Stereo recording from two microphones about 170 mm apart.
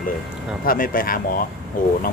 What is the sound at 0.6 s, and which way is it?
Speech, 55° left (ahead or behind).